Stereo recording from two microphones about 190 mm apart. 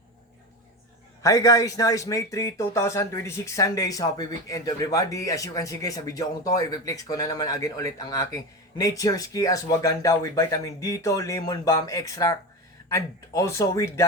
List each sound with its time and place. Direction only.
1.2 s a man's voice: 15° left (ahead or behind)